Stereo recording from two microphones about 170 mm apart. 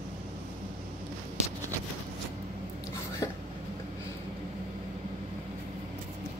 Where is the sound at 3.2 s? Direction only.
20° left (ahead or behind).